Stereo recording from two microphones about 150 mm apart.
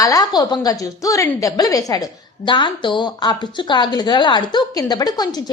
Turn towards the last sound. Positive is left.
turn(degrees=25)  # may be behind; listen again after turning